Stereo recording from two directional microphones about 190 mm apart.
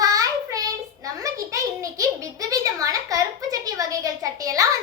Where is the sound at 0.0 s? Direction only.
20° right (ahead or behind).